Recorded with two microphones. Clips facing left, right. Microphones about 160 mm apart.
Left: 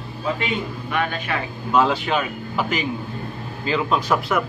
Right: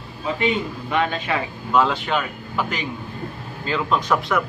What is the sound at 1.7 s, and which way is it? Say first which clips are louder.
Speech: left 1 dB; centre (ahead or behind).